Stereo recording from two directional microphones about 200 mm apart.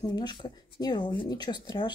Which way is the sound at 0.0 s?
20° left (ahead or behind).